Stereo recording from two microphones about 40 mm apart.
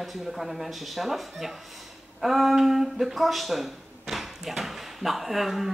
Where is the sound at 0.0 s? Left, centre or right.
Centre.